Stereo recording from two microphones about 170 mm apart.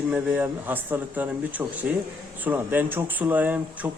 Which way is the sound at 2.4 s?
10° right (ahead or behind).